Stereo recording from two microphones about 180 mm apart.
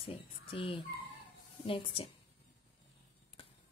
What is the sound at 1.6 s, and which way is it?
Speech, 30° left (ahead or behind).